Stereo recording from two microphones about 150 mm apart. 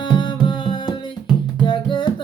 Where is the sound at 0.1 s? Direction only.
30° left (ahead or behind).